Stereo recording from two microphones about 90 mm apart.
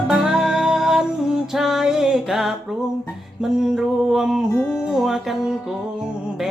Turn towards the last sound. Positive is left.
turn(degrees=-5)  # may be behind; listen again after turning